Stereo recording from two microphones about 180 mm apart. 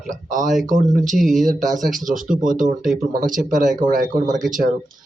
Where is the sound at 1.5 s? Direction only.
45° right (ahead or behind).